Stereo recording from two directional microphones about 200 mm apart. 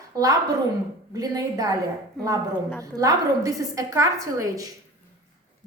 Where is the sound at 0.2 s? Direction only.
15° right (ahead or behind).